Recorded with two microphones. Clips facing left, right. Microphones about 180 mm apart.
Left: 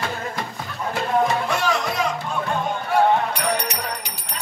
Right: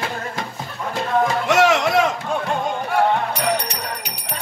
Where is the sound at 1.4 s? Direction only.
80° right.